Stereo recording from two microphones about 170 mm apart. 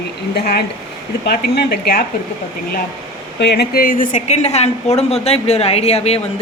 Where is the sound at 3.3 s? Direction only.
85° left.